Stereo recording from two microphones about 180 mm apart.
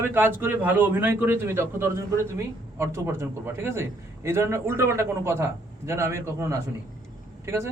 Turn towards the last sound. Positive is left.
turn(degrees=-15)  # may be behind; listen again after turning